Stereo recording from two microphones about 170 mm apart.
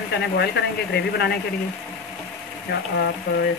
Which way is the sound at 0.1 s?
80° left.